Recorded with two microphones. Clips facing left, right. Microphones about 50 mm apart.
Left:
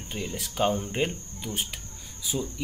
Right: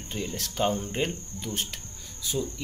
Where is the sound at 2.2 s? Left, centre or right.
Centre.